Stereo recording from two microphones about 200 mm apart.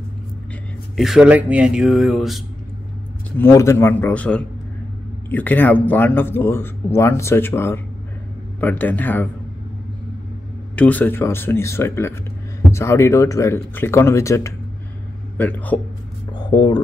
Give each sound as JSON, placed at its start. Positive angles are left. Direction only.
{"t": 0.9, "sound": "speech", "side_deg": 0}
{"t": 3.3, "sound": "speech", "side_deg": 15}
{"t": 10.8, "sound": "speech", "side_deg": 10}
{"t": 16.3, "sound": "speech", "side_deg": 20}